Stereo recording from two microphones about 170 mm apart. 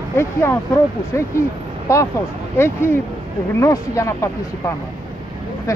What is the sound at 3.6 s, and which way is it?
Speech, 20° left (ahead or behind).